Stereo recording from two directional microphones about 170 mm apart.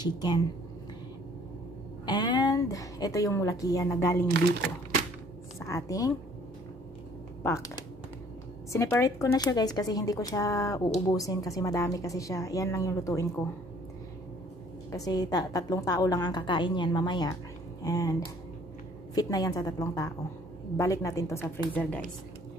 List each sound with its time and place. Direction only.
0.0 s a woman's voice: 25° left (ahead or behind)
2.0 s a woman's voice: 25° left (ahead or behind)
5.7 s a woman's voice: 20° left (ahead or behind)
7.4 s a woman's voice: 20° left (ahead or behind)
14.9 s a woman's voice: 20° left (ahead or behind)
19.1 s a woman's voice: 20° left (ahead or behind)